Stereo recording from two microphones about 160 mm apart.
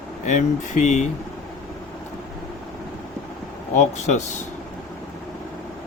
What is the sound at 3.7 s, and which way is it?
Speech, 45° left (ahead or behind).